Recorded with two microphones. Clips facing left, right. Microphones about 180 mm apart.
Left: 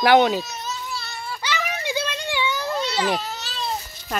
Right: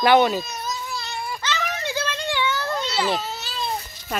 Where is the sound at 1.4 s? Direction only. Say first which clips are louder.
Left 2 dB; 10° left (ahead or behind).